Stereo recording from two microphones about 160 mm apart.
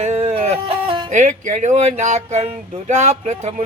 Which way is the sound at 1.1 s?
50° right (ahead or behind).